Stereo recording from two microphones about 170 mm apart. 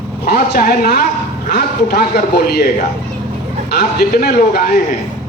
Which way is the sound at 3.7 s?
65° left (ahead or behind).